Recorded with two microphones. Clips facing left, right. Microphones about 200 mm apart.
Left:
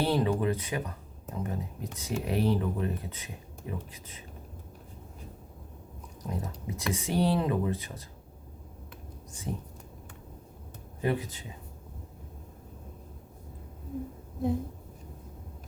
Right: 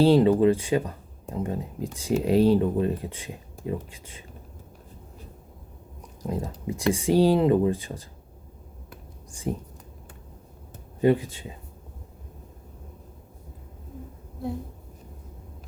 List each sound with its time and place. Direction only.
0.0 s speech: 25° right (ahead or behind)
6.2 s speech: 30° right (ahead or behind)
11.0 s speech: 25° right (ahead or behind)